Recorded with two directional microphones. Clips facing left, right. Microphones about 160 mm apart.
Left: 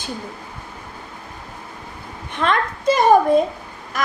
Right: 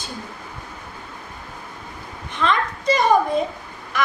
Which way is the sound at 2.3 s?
55° left (ahead or behind).